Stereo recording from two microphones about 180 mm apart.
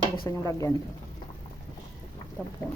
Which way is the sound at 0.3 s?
15° left (ahead or behind).